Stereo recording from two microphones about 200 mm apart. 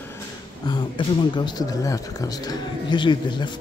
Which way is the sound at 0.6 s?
25° left (ahead or behind).